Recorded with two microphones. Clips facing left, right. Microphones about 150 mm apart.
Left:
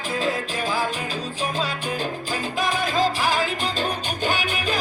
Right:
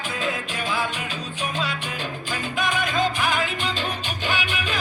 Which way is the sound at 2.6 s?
35° left (ahead or behind).